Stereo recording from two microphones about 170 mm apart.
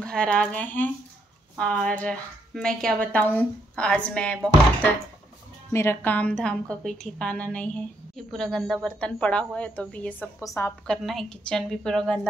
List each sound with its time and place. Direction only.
0.0 s a woman's voice: 5° left (ahead or behind)
5.7 s a woman's voice: 15° left (ahead or behind)
10.9 s speech: 5° left (ahead or behind)